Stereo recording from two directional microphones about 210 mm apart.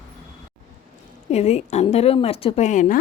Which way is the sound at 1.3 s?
30° left (ahead or behind).